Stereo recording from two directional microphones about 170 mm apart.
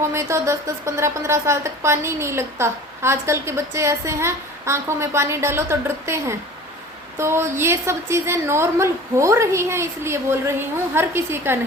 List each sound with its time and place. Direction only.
0.1 s a woman's voice: 15° right (ahead or behind)